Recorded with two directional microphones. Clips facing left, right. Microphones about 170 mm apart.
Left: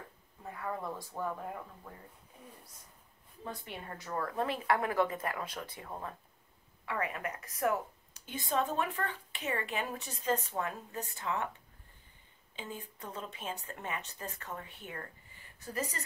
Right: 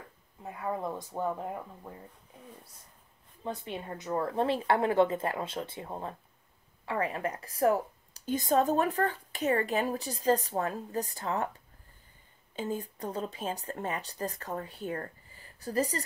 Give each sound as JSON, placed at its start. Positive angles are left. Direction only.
{"t": 0.4, "sound": "a woman's voice", "side_deg": -20}
{"t": 3.4, "sound": "a woman's voice", "side_deg": -20}
{"t": 12.5, "sound": "a woman's voice", "side_deg": -40}